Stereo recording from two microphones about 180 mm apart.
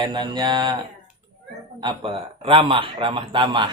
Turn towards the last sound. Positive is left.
turn(degrees=-25)  # may be behind; listen again after turning